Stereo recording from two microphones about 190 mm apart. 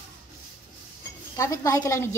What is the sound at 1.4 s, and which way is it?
Laughter, 15° left (ahead or behind).